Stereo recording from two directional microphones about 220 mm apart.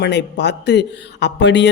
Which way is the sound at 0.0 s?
50° left (ahead or behind).